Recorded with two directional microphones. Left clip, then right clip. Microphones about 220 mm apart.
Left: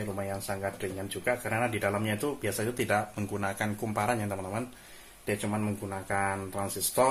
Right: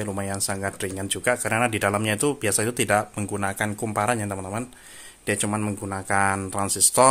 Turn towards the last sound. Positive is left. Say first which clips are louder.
# right 8 dB
turn(degrees=-45)  # may be behind; listen again after turning